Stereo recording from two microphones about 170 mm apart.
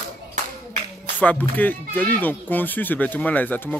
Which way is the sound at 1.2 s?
10° left (ahead or behind).